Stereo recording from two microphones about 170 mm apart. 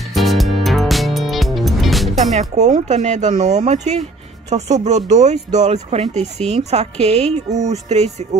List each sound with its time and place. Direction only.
0.1 s music: centre (ahead or behind)
2.3 s speech: 40° right (ahead or behind)